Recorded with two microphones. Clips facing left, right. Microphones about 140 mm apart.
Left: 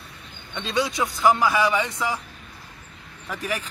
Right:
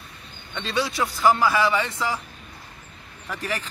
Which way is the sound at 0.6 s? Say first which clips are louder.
Left 1 dB; 20° left (ahead or behind).